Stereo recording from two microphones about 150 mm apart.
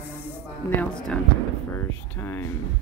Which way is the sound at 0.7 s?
5° left (ahead or behind).